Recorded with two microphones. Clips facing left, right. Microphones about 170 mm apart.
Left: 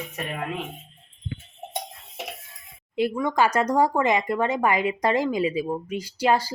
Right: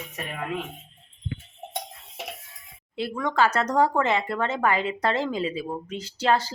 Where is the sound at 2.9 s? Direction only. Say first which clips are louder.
Left 2 dB; 10° left (ahead or behind).